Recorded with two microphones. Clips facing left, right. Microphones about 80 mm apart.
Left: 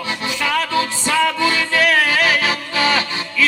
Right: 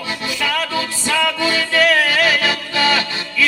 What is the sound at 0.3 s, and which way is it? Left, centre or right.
Music, left.